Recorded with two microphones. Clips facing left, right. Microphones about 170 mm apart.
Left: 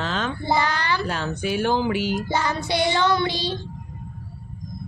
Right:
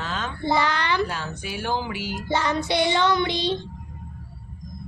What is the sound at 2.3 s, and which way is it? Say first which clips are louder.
Child singing: right 1 dB; 25° right (ahead or behind).